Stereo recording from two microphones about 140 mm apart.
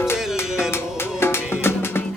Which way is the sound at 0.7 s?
15° left (ahead or behind).